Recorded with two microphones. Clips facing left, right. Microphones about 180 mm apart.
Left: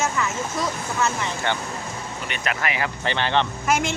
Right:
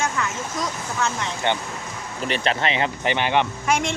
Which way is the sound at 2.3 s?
25° right (ahead or behind).